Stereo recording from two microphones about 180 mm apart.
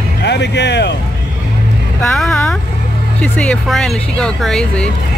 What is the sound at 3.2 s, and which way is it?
Speech, 5° left (ahead or behind).